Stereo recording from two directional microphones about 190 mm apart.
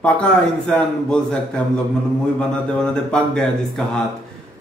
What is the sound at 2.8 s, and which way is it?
Speech, 5° left (ahead or behind).